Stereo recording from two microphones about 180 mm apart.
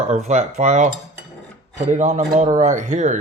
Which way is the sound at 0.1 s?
40° right (ahead or behind).